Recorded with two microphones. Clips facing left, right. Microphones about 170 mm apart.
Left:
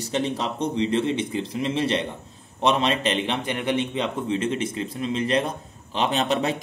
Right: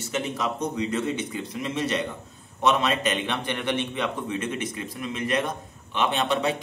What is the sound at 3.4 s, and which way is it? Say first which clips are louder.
A man's voice: left 3 dB; 20° left (ahead or behind).